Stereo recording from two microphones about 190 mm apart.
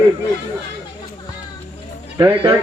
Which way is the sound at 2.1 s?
20° right (ahead or behind).